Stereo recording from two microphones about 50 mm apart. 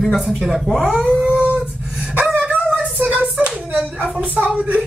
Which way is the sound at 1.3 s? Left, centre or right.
Right.